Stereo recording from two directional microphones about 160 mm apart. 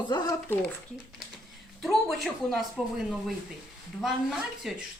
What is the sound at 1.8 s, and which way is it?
Speech, centre (ahead or behind).